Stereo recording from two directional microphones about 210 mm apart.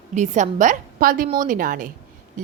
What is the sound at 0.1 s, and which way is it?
A woman's voice, 35° right (ahead or behind).